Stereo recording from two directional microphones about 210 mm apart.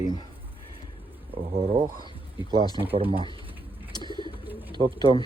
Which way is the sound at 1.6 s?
25° right (ahead or behind).